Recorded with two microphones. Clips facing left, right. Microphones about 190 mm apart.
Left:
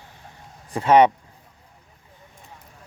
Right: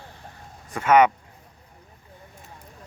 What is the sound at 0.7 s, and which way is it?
Speech, 30° left (ahead or behind).